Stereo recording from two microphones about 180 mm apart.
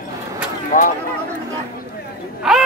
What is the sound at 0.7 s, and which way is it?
Speech, 45° left (ahead or behind).